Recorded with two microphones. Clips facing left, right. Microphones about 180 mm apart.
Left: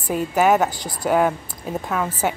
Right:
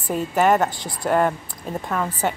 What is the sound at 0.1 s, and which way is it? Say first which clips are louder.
A woman's voice: left 1 dB; 5° left (ahead or behind).